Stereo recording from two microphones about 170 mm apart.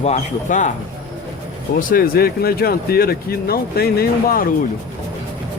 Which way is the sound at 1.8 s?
55° left (ahead or behind).